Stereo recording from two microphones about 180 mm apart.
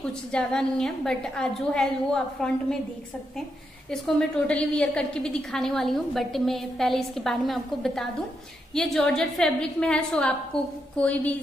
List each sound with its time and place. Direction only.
0.3 s a woman's voice: 5° left (ahead or behind)
4.5 s a woman's voice: 5° left (ahead or behind)